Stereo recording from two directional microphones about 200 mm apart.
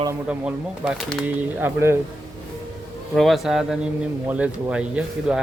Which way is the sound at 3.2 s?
Centre (ahead or behind).